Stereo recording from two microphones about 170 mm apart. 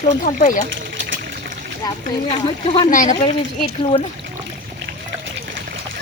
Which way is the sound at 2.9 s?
50° left (ahead or behind).